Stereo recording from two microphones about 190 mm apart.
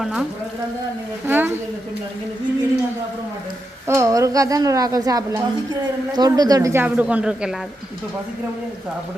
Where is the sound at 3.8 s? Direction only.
15° right (ahead or behind).